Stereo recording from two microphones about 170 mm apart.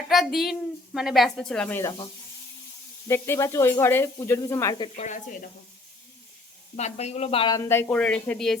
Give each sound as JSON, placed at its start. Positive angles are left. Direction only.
{"t": 0.1, "sound": "speech", "side_deg": 0}
{"t": 3.1, "sound": "speech", "side_deg": 15}
{"t": 4.9, "sound": "speech", "side_deg": 45}
{"t": 6.7, "sound": "speech", "side_deg": 40}
{"t": 7.5, "sound": "speech", "side_deg": 15}